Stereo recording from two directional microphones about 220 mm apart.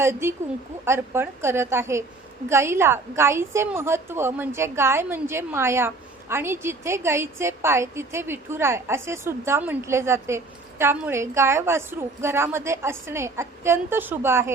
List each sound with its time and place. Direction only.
0.0 s a woman's voice: 10° right (ahead or behind)